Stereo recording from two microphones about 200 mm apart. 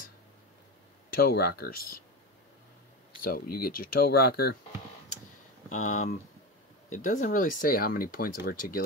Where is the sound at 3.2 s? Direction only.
50° left (ahead or behind).